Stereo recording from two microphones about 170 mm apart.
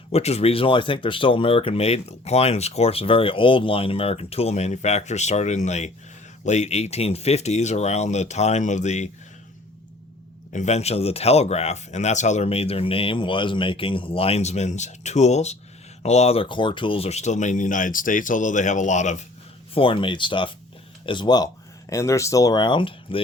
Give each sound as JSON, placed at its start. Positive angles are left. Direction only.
{"t": 0.1, "sound": "speech", "side_deg": 40}
{"t": 10.5, "sound": "speech", "side_deg": 40}
{"t": 19.7, "sound": "speech", "side_deg": 30}